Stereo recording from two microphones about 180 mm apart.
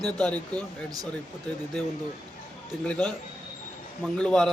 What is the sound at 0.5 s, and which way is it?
Speech, 20° right (ahead or behind).